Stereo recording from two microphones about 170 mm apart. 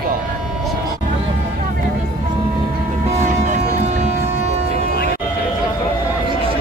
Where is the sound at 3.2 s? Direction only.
45° right (ahead or behind).